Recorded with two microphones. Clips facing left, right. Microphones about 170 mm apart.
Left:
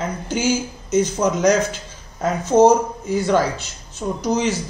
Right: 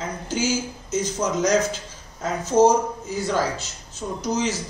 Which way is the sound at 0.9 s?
55° left (ahead or behind).